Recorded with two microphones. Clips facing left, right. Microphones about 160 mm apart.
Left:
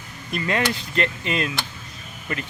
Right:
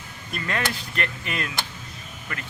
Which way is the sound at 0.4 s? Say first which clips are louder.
Left 5 dB; 20° left (ahead or behind).